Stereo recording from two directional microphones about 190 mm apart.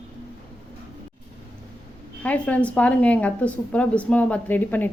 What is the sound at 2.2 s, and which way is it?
A woman's voice, 5° left (ahead or behind).